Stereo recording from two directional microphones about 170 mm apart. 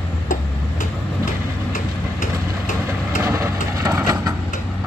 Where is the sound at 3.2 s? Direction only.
15° right (ahead or behind).